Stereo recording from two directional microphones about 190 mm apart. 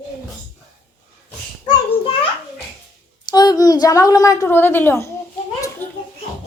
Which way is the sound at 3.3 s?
20° left (ahead or behind).